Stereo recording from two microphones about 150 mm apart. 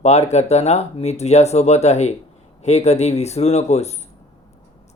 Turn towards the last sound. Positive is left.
turn(degrees=45)  # may be behind; listen again after turning